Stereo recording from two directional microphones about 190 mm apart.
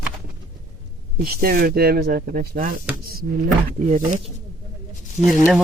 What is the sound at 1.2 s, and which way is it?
Speech, 50° right (ahead or behind).